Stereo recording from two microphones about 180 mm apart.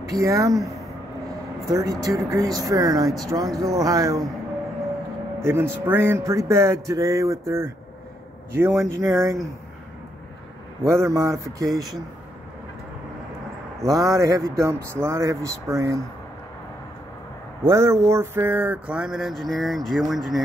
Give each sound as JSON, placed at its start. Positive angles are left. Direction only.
{"t": 0.1, "sound": "speech", "side_deg": -20}
{"t": 1.7, "sound": "speech", "side_deg": -20}
{"t": 5.4, "sound": "speech", "side_deg": -15}
{"t": 10.9, "sound": "speech", "side_deg": -15}
{"t": 13.8, "sound": "speech", "side_deg": -20}
{"t": 17.6, "sound": "a sound", "side_deg": -15}